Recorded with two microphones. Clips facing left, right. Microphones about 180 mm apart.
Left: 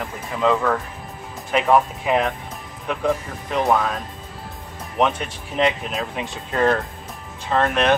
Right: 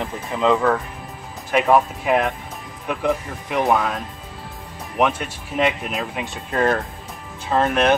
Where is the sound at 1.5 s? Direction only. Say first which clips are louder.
Right 1 dB; 5° right (ahead or behind).